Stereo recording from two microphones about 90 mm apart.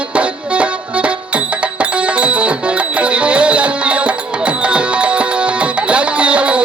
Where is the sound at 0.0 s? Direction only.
15° right (ahead or behind).